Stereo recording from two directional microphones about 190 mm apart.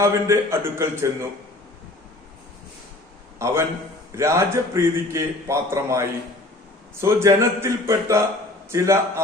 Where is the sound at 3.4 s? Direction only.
15° right (ahead or behind).